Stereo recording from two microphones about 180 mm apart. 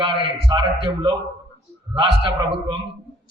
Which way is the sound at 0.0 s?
25° right (ahead or behind).